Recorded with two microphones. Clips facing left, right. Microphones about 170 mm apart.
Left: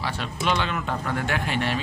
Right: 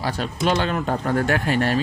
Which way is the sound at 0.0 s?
40° right (ahead or behind).